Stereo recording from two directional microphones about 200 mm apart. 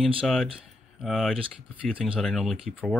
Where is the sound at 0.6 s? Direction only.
Centre (ahead or behind).